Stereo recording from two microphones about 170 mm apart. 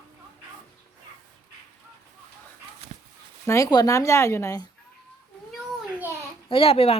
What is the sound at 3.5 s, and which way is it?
Speech, 20° left (ahead or behind).